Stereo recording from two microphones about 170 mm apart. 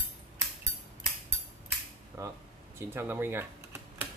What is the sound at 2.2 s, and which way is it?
Speech, 20° right (ahead or behind).